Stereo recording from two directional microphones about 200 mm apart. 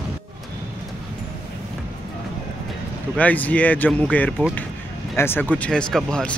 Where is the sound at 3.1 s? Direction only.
10° left (ahead or behind).